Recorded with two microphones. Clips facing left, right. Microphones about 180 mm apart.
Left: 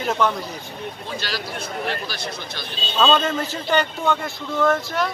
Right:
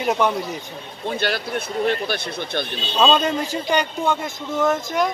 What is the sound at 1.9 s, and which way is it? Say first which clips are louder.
Speech: right 5 dB; 55° right (ahead or behind).